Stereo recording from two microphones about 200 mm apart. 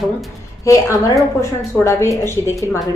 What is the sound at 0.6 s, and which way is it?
A woman's voice, 15° left (ahead or behind).